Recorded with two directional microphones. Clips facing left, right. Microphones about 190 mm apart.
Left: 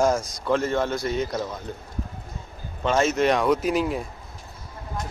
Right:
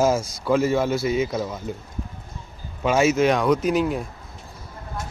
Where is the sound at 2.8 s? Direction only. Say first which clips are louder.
Right 2 dB; 10° right (ahead or behind).